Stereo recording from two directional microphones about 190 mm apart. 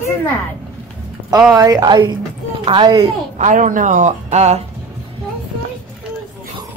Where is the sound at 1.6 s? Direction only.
20° right (ahead or behind).